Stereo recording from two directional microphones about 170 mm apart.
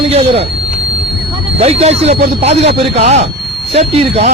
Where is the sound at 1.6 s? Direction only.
35° right (ahead or behind).